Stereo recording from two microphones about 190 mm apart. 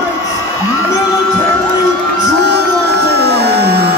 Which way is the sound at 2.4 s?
60° right (ahead or behind).